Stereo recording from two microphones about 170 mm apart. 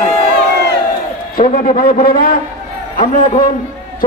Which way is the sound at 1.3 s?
55° left (ahead or behind).